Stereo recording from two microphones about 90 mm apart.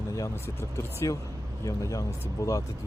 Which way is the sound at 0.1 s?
35° left (ahead or behind).